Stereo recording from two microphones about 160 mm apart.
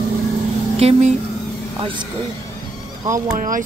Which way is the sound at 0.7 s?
40° right (ahead or behind).